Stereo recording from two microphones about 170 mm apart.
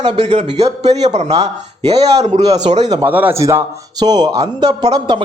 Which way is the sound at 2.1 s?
40° right (ahead or behind).